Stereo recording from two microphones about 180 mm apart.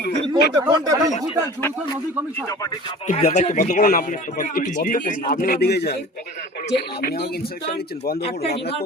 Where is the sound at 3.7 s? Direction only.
55° left (ahead or behind).